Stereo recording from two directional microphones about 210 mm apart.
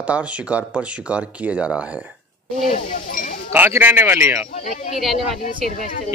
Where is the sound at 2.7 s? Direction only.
40° left (ahead or behind).